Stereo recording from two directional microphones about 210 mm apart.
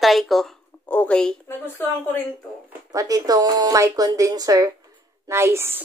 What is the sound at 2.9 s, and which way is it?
A woman's voice, 15° right (ahead or behind).